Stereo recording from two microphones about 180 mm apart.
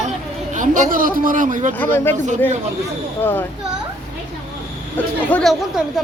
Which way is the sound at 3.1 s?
10° left (ahead or behind).